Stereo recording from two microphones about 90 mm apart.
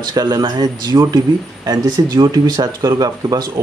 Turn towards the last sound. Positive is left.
turn(degrees=-45)  # may be behind; listen again after turning